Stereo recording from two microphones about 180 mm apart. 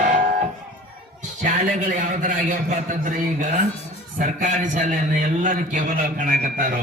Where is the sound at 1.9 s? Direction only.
45° right (ahead or behind).